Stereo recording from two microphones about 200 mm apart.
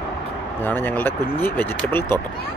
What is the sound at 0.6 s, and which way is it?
Speech, 10° left (ahead or behind).